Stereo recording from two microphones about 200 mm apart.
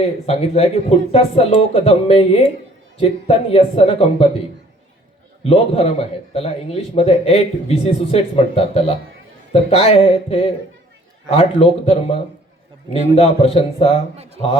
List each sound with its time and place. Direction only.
0.0 s a man's voice: 30° left (ahead or behind)
5.4 s a man's voice: 30° left (ahead or behind)